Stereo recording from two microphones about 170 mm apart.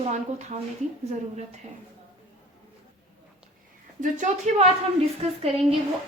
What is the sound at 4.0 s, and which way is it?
Speech, 45° right (ahead or behind).